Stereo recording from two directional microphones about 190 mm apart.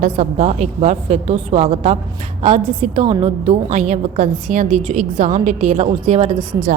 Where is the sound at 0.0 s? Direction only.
35° right (ahead or behind).